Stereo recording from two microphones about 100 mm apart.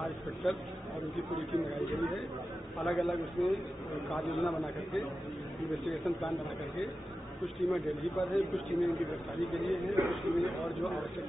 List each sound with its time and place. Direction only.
0.0 s a sound: centre (ahead or behind)
2.8 s a man's voice: centre (ahead or behind)
7.6 s a man's voice: centre (ahead or behind)